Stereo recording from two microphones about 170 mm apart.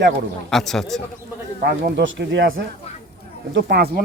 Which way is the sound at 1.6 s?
85° right.